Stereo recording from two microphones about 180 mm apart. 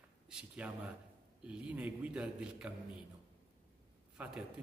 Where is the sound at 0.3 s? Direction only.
5° right (ahead or behind).